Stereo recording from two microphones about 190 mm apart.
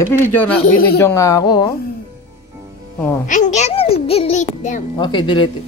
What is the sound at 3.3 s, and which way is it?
A child's voice, 40° left (ahead or behind).